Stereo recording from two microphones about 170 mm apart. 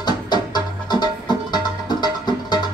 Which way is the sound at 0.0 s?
25° left (ahead or behind).